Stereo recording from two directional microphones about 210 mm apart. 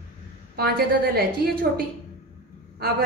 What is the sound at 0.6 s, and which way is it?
Speech, 50° right (ahead or behind).